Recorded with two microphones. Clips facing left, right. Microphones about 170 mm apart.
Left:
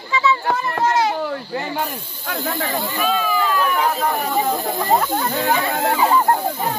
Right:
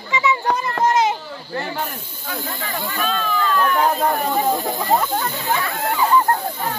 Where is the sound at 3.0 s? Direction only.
5° left (ahead or behind).